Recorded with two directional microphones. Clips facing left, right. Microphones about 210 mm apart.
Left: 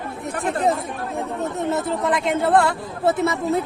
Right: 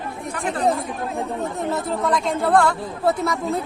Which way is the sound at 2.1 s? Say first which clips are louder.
Even; 20° left (ahead or behind).